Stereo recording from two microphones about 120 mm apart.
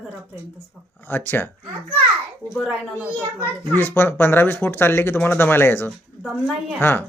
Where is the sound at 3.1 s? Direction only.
15° left (ahead or behind).